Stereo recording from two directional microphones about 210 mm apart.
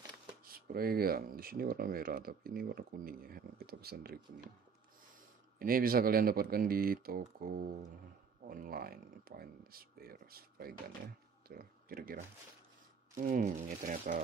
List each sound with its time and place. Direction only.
0.4 s speech: 45° right (ahead or behind)
5.6 s speech: 45° right (ahead or behind)